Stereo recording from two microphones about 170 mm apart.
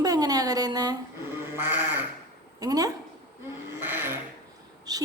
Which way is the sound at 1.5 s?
10° right (ahead or behind).